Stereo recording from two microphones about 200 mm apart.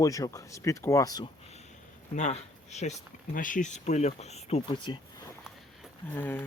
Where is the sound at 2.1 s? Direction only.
35° left (ahead or behind).